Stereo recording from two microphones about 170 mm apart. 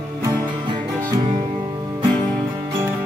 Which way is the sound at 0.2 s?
25° right (ahead or behind).